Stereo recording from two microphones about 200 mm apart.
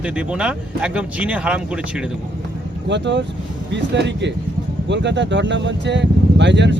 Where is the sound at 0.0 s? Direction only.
5° right (ahead or behind).